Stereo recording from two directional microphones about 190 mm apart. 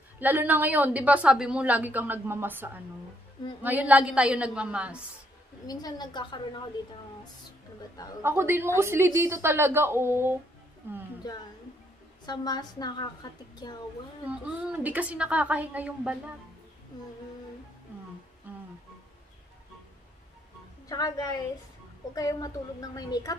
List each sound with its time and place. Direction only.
0.2 s a woman's voice: 10° right (ahead or behind)
5.7 s a woman's voice: 20° left (ahead or behind)
8.2 s a woman's voice: 10° right (ahead or behind)
11.3 s a woman's voice: 20° left (ahead or behind)
14.3 s a woman's voice: 5° right (ahead or behind)
20.9 s a woman's voice: 20° left (ahead or behind)